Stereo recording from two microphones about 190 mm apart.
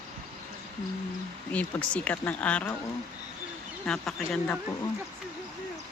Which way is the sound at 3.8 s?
5° left (ahead or behind).